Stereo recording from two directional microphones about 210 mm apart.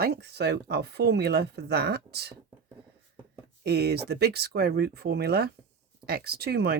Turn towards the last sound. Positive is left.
turn(degrees=-50)  # may be behind; listen again after turning